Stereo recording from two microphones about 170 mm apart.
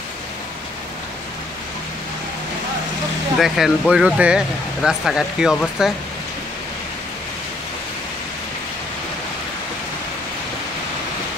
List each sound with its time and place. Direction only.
3.3 s speech: centre (ahead or behind)